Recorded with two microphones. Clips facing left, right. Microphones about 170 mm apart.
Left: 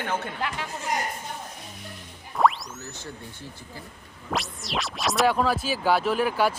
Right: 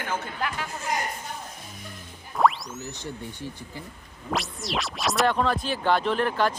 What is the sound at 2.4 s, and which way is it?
Music, centre (ahead or behind).